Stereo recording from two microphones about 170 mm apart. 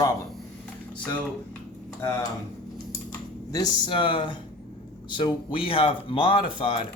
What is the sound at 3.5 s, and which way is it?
Speech, 25° left (ahead or behind).